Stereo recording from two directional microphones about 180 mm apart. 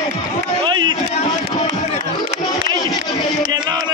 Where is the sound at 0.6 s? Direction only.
25° right (ahead or behind).